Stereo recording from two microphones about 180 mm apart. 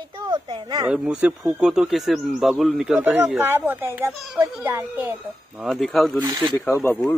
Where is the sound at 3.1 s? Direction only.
10° right (ahead or behind).